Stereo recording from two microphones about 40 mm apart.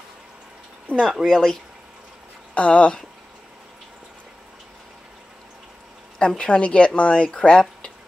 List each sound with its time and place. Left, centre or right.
1.0 s speech: centre
2.5 s speech: left
6.1 s speech: left